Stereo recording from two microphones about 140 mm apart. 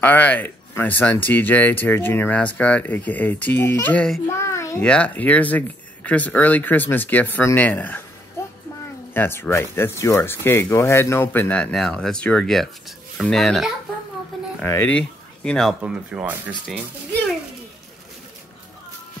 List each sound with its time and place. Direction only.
0.0 s speech: 10° left (ahead or behind)
4.3 s a sound: 20° left (ahead or behind)
4.8 s speech: 10° left (ahead or behind)
9.1 s speech: 15° left (ahead or behind); by 13.7 s centre (ahead or behind)
14.3 s a sound: centre (ahead or behind)
14.7 s speech: 10° left (ahead or behind)
15.8 s speech: 5° right (ahead or behind)